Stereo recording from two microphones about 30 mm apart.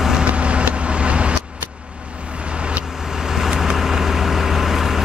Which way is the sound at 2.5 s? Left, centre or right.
Right.